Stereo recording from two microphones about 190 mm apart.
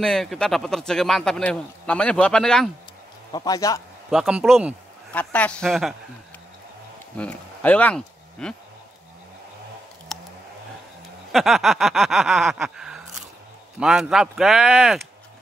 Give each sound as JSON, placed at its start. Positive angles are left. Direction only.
{"t": 0.0, "sound": "a man's voice", "side_deg": 0}
{"t": 3.3, "sound": "a man's voice", "side_deg": 20}
{"t": 4.1, "sound": "a man's voice", "side_deg": -5}
{"t": 5.1, "sound": "a man's voice", "side_deg": 5}
{"t": 7.2, "sound": "speech", "side_deg": 5}
{"t": 10.1, "sound": "a sound", "side_deg": 0}
{"t": 11.3, "sound": "a sound", "side_deg": 0}
{"t": 13.7, "sound": "a man's voice", "side_deg": 0}